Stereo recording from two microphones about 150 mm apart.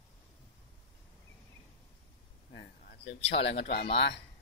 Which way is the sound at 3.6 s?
90° left.